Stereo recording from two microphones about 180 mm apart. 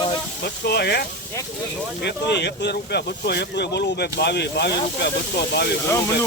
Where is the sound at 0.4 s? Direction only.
60° left (ahead or behind).